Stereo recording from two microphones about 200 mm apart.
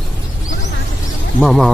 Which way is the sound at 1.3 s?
Centre (ahead or behind).